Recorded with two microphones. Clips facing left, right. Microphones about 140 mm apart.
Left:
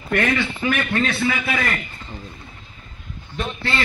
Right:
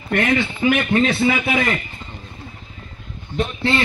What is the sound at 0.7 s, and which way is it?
Speech, 25° right (ahead or behind).